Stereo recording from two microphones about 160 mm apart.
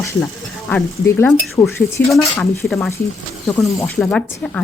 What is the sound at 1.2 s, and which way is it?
Speech, 15° left (ahead or behind).